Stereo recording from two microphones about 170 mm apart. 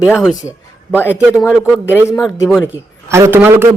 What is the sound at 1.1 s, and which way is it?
Speech, 10° right (ahead or behind).